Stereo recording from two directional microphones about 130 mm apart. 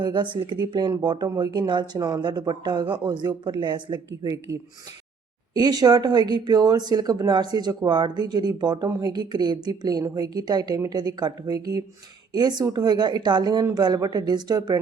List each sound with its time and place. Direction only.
0.0 s speech: 35° right (ahead or behind)